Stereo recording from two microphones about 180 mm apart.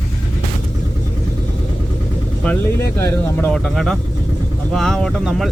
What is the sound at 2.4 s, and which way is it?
Speech, 10° left (ahead or behind).